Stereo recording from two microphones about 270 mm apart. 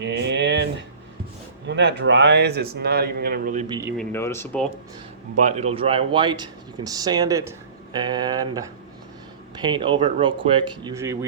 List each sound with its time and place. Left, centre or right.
0.0 s a sound: right
1.6 s a man's voice: right
3.9 s speech: centre
5.4 s speech: right; by 11.3 s centre